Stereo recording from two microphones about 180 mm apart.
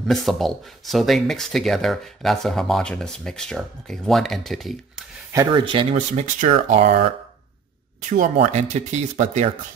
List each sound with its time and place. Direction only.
0.0 s speech: centre (ahead or behind)
5.3 s speech: 20° right (ahead or behind); by 9.5 s 40° right (ahead or behind)